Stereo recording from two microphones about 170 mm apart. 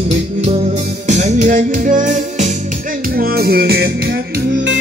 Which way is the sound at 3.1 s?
65° right (ahead or behind).